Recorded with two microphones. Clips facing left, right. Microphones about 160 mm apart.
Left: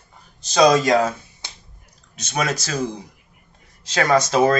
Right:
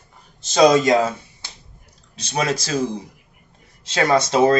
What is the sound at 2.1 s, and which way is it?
Speech, 30° right (ahead or behind).